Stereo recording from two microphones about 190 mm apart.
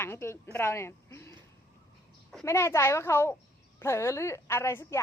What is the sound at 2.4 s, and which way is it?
A woman's voice, 15° left (ahead or behind).